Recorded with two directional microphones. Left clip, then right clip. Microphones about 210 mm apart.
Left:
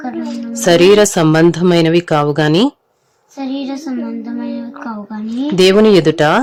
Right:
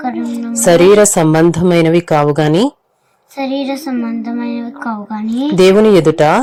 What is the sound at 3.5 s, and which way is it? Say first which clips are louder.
Speech: right 4 dB; 15° right (ahead or behind).